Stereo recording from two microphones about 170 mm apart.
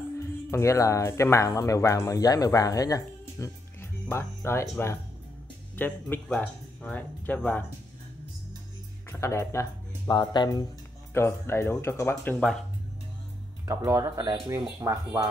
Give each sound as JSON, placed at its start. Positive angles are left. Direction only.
{"t": 0.5, "sound": "speech", "side_deg": 15}
{"t": 9.1, "sound": "speech", "side_deg": 15}
{"t": 11.1, "sound": "speech", "side_deg": 15}
{"t": 13.7, "sound": "speech", "side_deg": -15}